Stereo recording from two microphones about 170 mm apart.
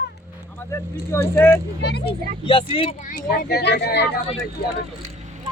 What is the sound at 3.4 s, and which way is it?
Speech, 75° left (ahead or behind).